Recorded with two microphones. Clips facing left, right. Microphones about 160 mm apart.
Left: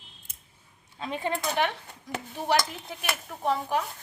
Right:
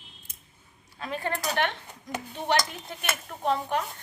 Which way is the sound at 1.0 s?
20° left (ahead or behind).